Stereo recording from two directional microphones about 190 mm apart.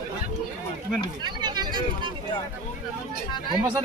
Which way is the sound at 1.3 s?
20° right (ahead or behind).